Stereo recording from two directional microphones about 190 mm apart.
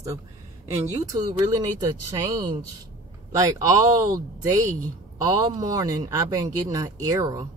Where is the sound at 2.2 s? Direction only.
20° right (ahead or behind).